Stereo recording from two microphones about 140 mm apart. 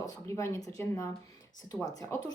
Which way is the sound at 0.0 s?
20° left (ahead or behind).